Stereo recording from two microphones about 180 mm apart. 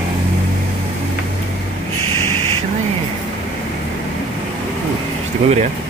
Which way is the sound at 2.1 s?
15° left (ahead or behind).